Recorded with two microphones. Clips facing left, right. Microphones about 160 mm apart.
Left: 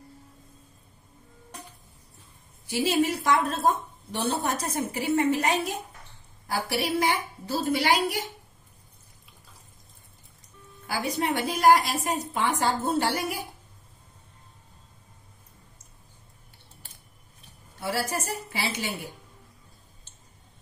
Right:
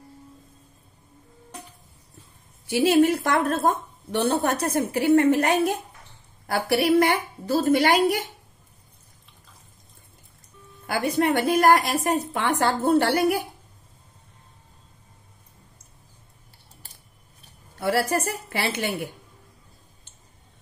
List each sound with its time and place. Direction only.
2.7 s a woman's voice: 60° right (ahead or behind)
10.9 s a woman's voice: 60° right (ahead or behind)
17.7 s a woman's voice: 60° right (ahead or behind)